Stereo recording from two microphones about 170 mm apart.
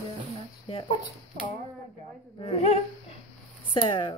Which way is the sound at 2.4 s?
35° left (ahead or behind).